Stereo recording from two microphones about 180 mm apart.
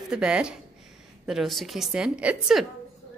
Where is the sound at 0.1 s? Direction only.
5° right (ahead or behind).